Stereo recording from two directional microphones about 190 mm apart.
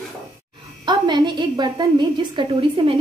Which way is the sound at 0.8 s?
25° right (ahead or behind).